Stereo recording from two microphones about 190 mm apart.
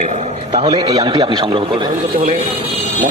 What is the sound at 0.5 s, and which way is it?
A man's voice, 25° right (ahead or behind).